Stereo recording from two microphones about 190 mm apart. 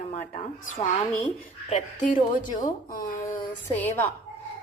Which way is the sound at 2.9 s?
45° left (ahead or behind).